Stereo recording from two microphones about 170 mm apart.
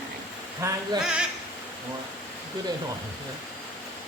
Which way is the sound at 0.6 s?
15° right (ahead or behind).